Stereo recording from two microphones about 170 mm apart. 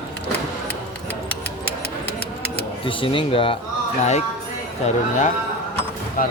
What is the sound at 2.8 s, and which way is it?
Speech, 30° left (ahead or behind).